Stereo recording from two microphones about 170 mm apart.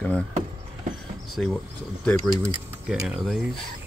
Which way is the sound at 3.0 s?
Centre (ahead or behind).